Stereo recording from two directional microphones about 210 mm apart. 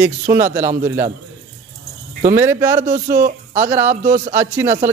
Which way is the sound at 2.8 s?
40° right (ahead or behind).